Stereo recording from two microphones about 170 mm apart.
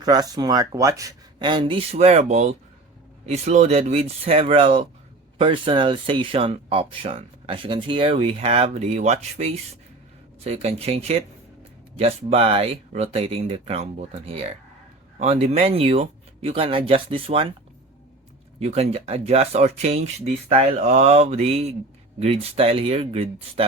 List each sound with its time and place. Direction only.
0.0 s speech: 25° right (ahead or behind)
18.6 s speech: 40° right (ahead or behind)